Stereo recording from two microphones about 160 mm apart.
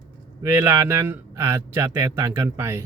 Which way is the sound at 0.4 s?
20° right (ahead or behind).